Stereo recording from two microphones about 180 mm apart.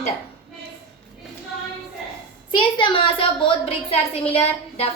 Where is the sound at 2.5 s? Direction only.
30° left (ahead or behind).